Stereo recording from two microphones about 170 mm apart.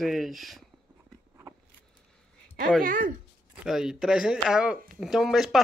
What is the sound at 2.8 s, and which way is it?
Speech, 55° right (ahead or behind).